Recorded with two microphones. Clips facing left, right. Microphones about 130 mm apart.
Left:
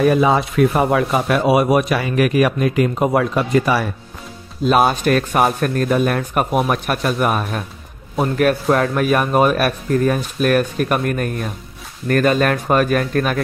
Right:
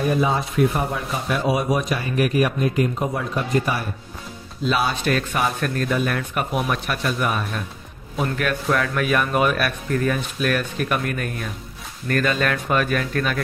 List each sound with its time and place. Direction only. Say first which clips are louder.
0.0 s speech: left 6 dB; 90° left
4.6 s speech: left 7 dB; 50° left (ahead or behind)